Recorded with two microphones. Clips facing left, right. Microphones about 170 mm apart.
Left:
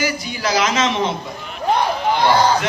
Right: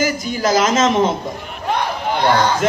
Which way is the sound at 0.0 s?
45° right (ahead or behind).